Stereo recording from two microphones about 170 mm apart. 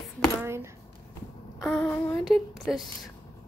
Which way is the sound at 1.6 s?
5° left (ahead or behind).